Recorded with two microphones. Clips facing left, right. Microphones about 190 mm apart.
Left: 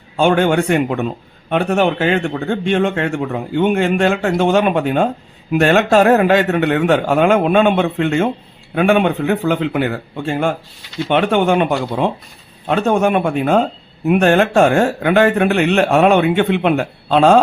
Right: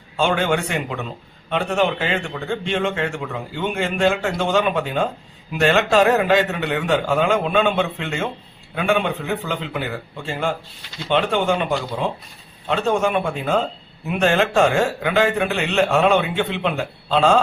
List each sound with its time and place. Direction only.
0.2 s a man's voice: 55° left (ahead or behind)